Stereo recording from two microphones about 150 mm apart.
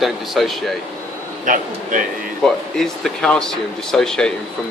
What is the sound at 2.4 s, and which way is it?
Speech, 5° left (ahead or behind).